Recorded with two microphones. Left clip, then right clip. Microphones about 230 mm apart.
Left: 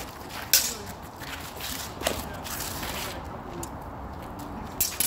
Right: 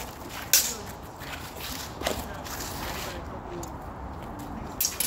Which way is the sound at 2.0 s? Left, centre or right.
Left.